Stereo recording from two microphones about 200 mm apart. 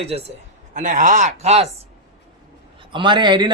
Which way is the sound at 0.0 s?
30° right (ahead or behind).